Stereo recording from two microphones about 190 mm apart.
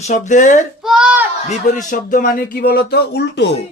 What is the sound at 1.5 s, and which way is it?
Speech, 40° left (ahead or behind).